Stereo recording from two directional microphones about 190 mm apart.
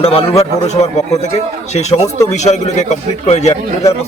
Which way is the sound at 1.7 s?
35° left (ahead or behind).